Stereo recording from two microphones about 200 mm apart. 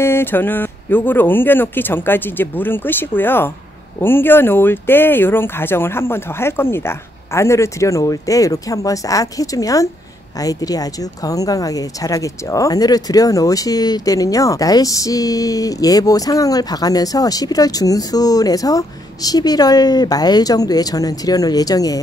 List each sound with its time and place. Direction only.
0.0 s speech: 10° left (ahead or behind)